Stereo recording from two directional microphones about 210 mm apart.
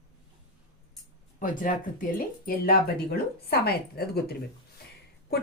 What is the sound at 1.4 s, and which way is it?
Speech, 40° left (ahead or behind).